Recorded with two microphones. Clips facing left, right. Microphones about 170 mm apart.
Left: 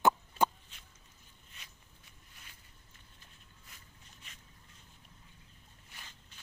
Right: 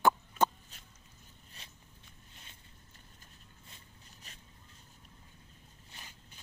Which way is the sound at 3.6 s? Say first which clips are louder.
Even; 30° right (ahead or behind).